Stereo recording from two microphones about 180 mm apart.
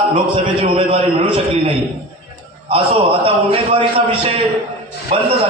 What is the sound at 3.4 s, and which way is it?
Speech, 30° right (ahead or behind).